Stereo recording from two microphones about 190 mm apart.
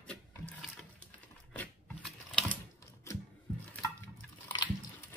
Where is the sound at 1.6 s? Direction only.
5° left (ahead or behind).